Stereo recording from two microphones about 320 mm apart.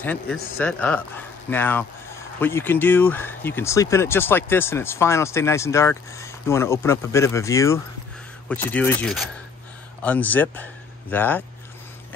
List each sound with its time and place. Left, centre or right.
0.0 s speech: centre